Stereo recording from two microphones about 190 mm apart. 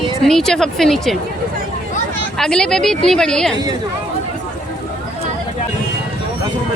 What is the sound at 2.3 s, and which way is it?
A woman's voice, 5° left (ahead or behind).